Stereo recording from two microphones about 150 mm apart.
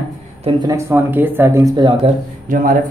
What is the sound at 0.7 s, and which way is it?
Speech, 20° right (ahead or behind).